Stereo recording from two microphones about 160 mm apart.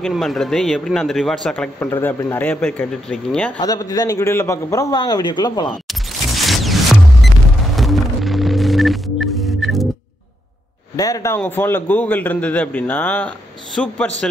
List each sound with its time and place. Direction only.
0.0 s a man's voice: centre (ahead or behind)
3.5 s a man's voice: 20° left (ahead or behind)
5.9 s a sound: centre (ahead or behind)
7.7 s music: centre (ahead or behind)
11.0 s a man's voice: 20° left (ahead or behind)